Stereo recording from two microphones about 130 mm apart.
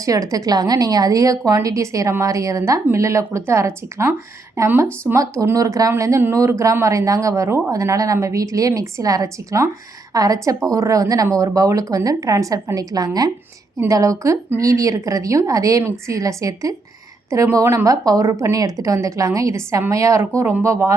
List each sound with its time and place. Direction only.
0.0 s speech: 25° right (ahead or behind)